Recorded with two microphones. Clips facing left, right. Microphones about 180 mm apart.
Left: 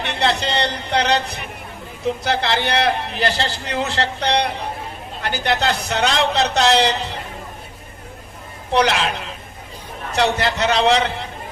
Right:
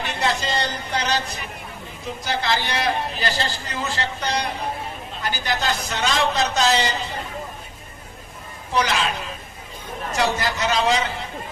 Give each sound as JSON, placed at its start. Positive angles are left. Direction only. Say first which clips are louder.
{"t": 0.0, "sound": "a man's voice", "louder": "left 3 dB", "side_deg": 65}
{"t": 8.7, "sound": "a man's voice", "louder": "left 4 dB", "side_deg": 65}